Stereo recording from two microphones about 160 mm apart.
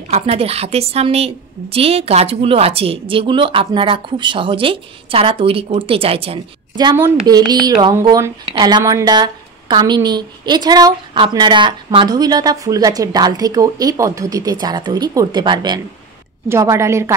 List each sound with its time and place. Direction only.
0.1 s a woman's voice: 40° right (ahead or behind)
7.0 s a woman's voice: 25° right (ahead or behind)
8.5 s a woman's voice: 30° right (ahead or behind)
16.4 s a woman's voice: 15° right (ahead or behind)